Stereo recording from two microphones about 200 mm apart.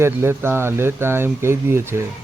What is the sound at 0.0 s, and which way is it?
Speech, 10° right (ahead or behind).